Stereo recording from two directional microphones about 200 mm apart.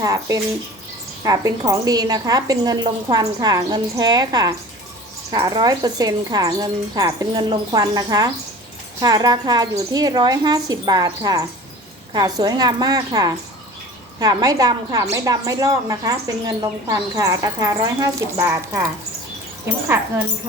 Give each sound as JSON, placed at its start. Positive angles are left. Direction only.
{"t": 0.0, "sound": "a woman's voice", "side_deg": -15}